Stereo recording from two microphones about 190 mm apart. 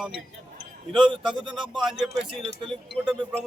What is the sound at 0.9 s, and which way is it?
Speech, 25° right (ahead or behind).